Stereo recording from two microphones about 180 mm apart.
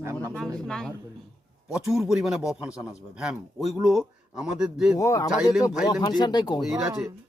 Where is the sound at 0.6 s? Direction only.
5° left (ahead or behind).